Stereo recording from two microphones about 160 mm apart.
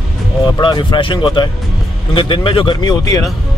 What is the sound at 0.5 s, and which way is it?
Speech, 30° left (ahead or behind).